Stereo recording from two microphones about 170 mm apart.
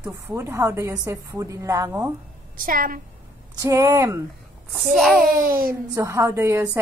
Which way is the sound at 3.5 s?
20° right (ahead or behind).